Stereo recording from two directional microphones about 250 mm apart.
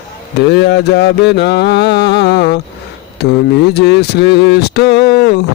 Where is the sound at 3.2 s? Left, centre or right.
Left.